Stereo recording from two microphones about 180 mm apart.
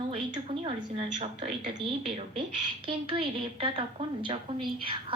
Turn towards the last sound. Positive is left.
turn(degrees=-30)  # may be behind; listen again after turning